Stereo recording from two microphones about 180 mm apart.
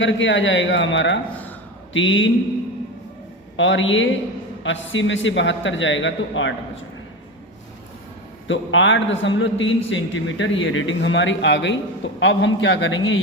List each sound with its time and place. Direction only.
0.0 s a man's voice: 90° left
3.6 s a man's voice: 90° left
8.4 s a man's voice: 90° left